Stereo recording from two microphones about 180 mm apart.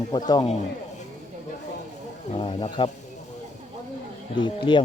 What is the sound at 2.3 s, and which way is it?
Speech, 30° left (ahead or behind).